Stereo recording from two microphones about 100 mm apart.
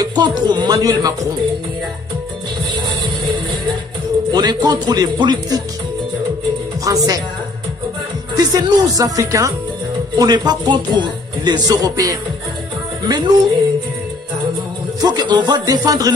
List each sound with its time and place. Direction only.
0.0 s speech: 45° right (ahead or behind)
4.3 s speech: 45° right (ahead or behind)
6.8 s speech: 35° right (ahead or behind)
8.4 s speech: 40° right (ahead or behind)
10.1 s speech: 45° right (ahead or behind)
13.0 s speech: 50° right (ahead or behind)
15.0 s speech: 45° right (ahead or behind)